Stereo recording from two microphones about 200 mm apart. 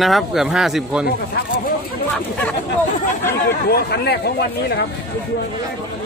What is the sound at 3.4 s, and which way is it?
Speech, 50° left (ahead or behind).